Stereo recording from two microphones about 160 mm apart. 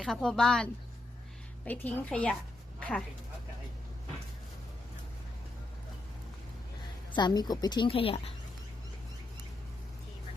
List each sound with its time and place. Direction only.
0.0 s a woman's voice: 5° left (ahead or behind)
7.1 s a woman's voice: 25° left (ahead or behind)